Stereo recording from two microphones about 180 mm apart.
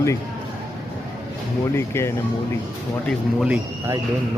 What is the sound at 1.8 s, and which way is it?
Speech, 15° left (ahead or behind).